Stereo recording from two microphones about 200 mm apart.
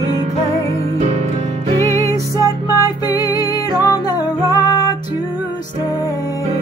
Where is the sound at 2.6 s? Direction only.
20° left (ahead or behind).